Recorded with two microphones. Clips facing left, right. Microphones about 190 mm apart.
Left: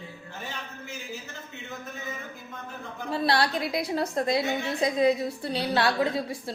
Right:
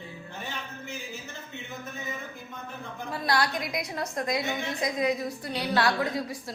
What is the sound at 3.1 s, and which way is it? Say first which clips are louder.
A woman's voice: left 3 dB; 30° left (ahead or behind).